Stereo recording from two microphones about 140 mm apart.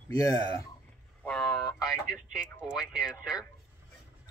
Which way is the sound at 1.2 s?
Centre (ahead or behind).